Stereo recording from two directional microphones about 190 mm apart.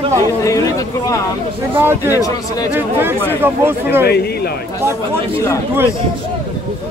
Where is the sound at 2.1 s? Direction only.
20° left (ahead or behind).